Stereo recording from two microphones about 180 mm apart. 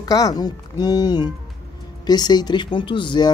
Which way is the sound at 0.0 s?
20° left (ahead or behind).